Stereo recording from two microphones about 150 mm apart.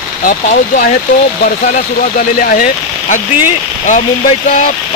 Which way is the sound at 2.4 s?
65° left (ahead or behind).